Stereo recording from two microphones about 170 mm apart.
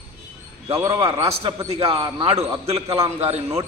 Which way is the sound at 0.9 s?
30° right (ahead or behind).